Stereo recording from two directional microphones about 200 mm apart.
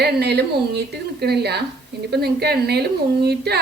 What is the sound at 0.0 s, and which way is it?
A woman's voice, 55° right (ahead or behind).